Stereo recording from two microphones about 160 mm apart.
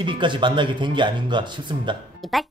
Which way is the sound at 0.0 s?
30° right (ahead or behind).